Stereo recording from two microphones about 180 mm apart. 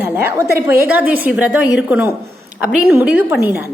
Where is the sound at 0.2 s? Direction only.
15° right (ahead or behind).